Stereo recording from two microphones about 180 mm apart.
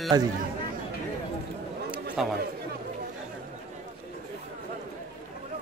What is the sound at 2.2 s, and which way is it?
Music, centre (ahead or behind).